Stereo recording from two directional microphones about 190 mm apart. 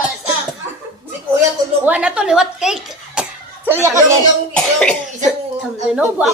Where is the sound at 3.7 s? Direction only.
15° right (ahead or behind).